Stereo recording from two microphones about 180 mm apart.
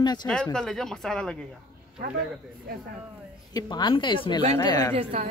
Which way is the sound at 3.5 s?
25° left (ahead or behind).